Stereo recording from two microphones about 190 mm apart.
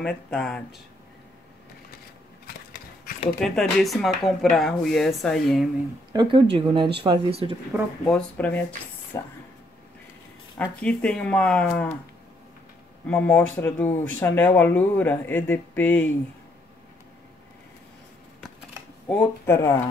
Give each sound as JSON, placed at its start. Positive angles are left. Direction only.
{"t": 0.0, "sound": "speech", "side_deg": 5}
{"t": 3.3, "sound": "speech", "side_deg": 5}
{"t": 6.1, "sound": "speech", "side_deg": -25}
{"t": 8.1, "sound": "speech", "side_deg": 5}
{"t": 9.1, "sound": "speech", "side_deg": 15}
{"t": 10.6, "sound": "speech", "side_deg": 5}
{"t": 13.0, "sound": "speech", "side_deg": 5}
{"t": 19.0, "sound": "speech", "side_deg": 10}